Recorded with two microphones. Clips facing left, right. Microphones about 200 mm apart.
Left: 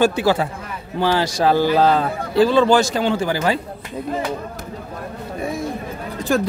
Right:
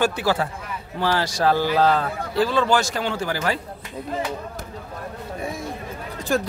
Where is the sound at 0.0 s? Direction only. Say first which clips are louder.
Left 5 dB; 20° left (ahead or behind).